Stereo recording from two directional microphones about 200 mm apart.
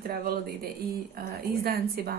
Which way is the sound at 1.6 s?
50° right (ahead or behind).